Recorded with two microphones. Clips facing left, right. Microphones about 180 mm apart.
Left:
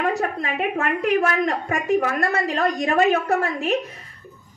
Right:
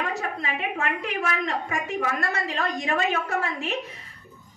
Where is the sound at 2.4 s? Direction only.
45° left (ahead or behind).